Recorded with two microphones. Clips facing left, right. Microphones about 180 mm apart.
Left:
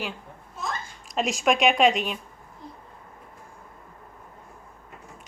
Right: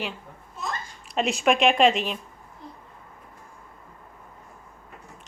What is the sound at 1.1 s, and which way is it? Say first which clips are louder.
Speech: right 1 dB; centre (ahead or behind).